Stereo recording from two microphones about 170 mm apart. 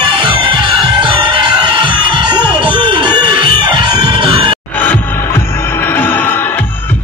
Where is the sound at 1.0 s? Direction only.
30° right (ahead or behind).